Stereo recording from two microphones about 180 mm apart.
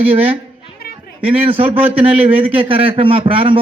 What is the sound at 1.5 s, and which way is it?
A man's voice, 30° right (ahead or behind).